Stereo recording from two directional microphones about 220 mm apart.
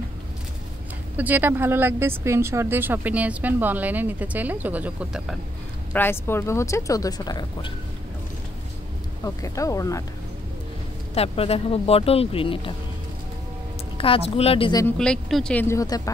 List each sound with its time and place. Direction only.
1.1 s speech: 10° right (ahead or behind)
5.9 s speech: 10° left (ahead or behind)
9.2 s speech: 15° left (ahead or behind)
11.1 s speech: 25° left (ahead or behind)
13.9 s speech: 25° left (ahead or behind)
15.0 s speech: centre (ahead or behind)